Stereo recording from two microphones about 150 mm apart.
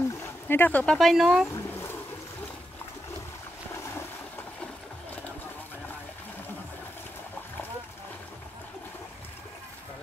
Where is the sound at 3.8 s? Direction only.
20° left (ahead or behind).